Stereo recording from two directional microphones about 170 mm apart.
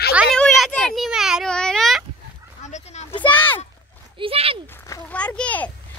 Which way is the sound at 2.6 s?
45° left (ahead or behind).